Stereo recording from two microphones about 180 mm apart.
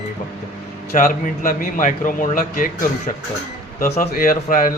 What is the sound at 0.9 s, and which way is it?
Speech, 50° left (ahead or behind).